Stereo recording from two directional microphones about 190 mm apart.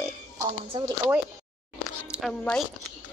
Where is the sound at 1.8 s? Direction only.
5° right (ahead or behind).